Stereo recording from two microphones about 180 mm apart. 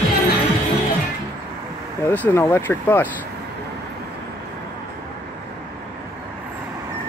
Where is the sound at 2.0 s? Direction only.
10° left (ahead or behind).